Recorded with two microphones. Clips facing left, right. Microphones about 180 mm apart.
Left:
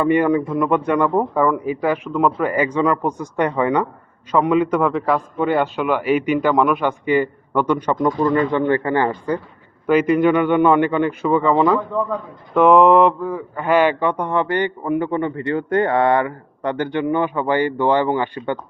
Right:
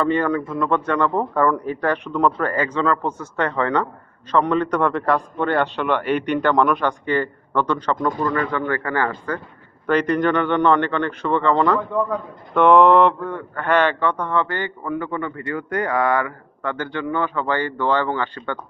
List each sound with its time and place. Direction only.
0.0 s a man's voice: 10° left (ahead or behind)
8.3 s speech: 25° left (ahead or behind)
9.8 s a man's voice: 5° left (ahead or behind)